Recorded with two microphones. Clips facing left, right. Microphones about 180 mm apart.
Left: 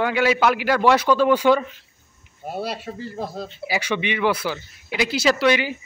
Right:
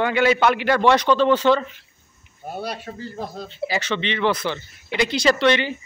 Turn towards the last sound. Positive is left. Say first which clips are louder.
# right 1 dB
turn(degrees=5)  # may be behind; listen again after turning